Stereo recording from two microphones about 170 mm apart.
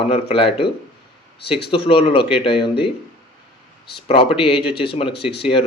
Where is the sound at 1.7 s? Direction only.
30° left (ahead or behind).